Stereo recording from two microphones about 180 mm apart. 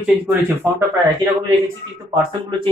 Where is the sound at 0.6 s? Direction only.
15° right (ahead or behind).